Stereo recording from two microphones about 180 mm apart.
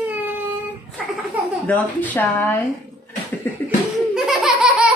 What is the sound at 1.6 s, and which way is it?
Speech, 10° left (ahead or behind).